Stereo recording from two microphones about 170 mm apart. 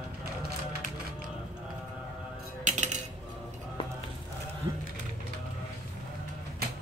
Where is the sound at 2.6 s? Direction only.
45° right (ahead or behind).